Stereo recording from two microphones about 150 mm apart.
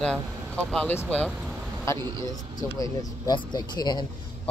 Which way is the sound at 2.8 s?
25° left (ahead or behind).